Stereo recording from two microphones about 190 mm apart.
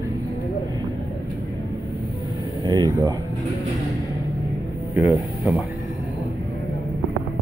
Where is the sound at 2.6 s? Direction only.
20° right (ahead or behind).